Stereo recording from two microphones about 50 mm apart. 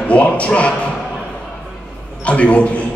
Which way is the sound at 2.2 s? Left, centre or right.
Left.